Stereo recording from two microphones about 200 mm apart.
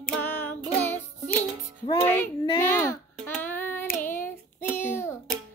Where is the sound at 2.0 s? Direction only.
10° left (ahead or behind).